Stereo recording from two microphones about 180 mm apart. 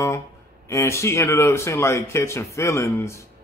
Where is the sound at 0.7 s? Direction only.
15° left (ahead or behind).